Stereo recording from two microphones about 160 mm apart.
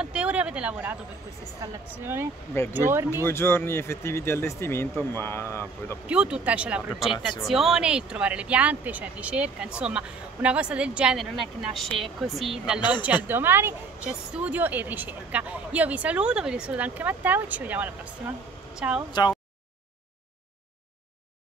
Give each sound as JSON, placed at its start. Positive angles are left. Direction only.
{"t": 0.0, "sound": "a sound", "side_deg": -5}
{"t": 1.6, "sound": "speech", "side_deg": -15}
{"t": 3.3, "sound": "speech", "side_deg": 15}
{"t": 6.0, "sound": "speech", "side_deg": -5}